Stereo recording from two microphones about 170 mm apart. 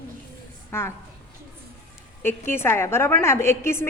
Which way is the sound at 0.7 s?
15° left (ahead or behind).